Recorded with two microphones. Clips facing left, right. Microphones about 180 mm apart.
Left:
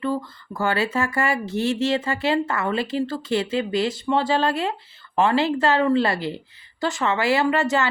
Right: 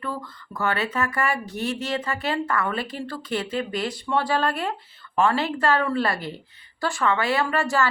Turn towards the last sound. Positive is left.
turn(degrees=20)  # may be behind; listen again after turning